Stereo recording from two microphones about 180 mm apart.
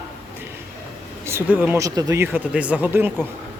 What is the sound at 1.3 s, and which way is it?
Speech, 10° right (ahead or behind).